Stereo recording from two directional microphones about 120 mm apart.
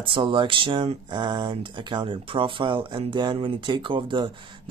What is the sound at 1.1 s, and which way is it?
Speech, 40° right (ahead or behind).